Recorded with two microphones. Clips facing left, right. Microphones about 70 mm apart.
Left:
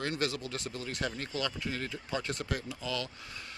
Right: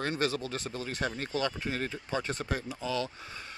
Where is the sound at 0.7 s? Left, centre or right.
Right.